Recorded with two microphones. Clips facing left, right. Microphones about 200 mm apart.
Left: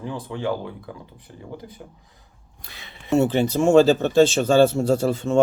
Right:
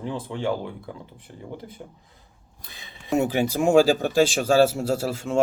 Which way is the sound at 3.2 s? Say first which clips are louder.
Left 3 dB; 10° right (ahead or behind).